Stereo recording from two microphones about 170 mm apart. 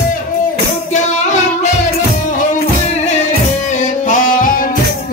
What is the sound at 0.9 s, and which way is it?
Music, 45° left (ahead or behind).